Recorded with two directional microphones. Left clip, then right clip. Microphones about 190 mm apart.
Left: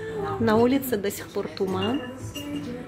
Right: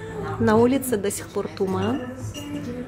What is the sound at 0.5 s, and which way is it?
A woman's voice, 10° right (ahead or behind).